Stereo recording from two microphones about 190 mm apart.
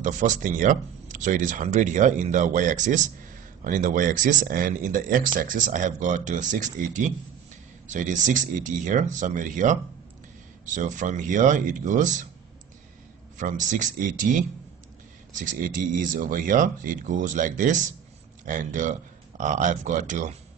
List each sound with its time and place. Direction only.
0.0 s speech: 40° right (ahead or behind)
13.4 s speech: 40° right (ahead or behind)